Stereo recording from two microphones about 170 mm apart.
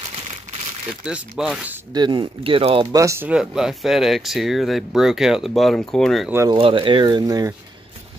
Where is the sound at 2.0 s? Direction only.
30° right (ahead or behind).